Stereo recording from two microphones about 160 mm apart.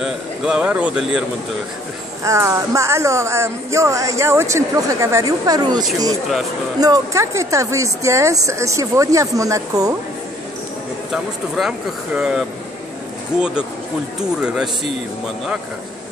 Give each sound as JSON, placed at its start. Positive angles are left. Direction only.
{"t": 0.0, "sound": "speech", "side_deg": -5}
{"t": 2.2, "sound": "speech", "side_deg": -20}
{"t": 11.1, "sound": "speech", "side_deg": 0}